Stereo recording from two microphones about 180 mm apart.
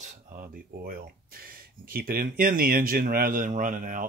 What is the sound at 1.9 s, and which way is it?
Speech, 55° right (ahead or behind).